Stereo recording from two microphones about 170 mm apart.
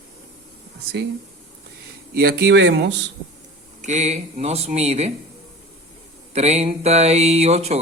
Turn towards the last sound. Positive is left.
turn(degrees=-40)  # may be behind; listen again after turning